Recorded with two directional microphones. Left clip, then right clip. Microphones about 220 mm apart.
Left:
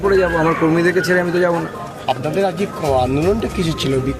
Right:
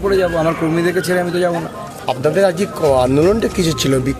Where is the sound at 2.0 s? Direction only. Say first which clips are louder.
Right 4 dB; 55° right (ahead or behind).